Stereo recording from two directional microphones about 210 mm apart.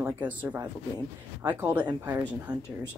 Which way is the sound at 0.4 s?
5° right (ahead or behind).